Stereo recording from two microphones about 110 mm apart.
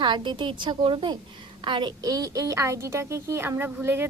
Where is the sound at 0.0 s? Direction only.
45° right (ahead or behind).